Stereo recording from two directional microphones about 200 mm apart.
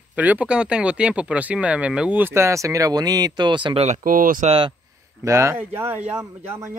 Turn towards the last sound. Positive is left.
turn(degrees=-15)  # may be behind; listen again after turning